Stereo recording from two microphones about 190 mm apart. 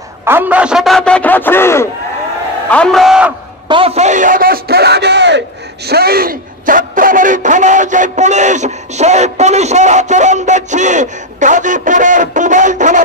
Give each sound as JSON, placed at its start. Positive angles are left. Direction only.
{"t": 0.2, "sound": "a man's voice", "side_deg": -10}
{"t": 3.6, "sound": "a man's voice", "side_deg": -30}
{"t": 5.9, "sound": "speech", "side_deg": -55}